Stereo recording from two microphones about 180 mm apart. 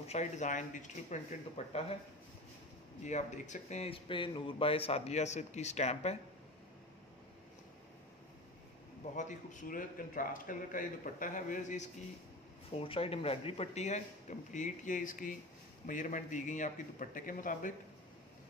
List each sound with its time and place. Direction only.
0.0 s speech: 40° left (ahead or behind)
3.0 s speech: 40° left (ahead or behind)
9.1 s a man's voice: 45° left (ahead or behind)
12.7 s a man's voice: 30° left (ahead or behind); by 17.7 s 45° left (ahead or behind)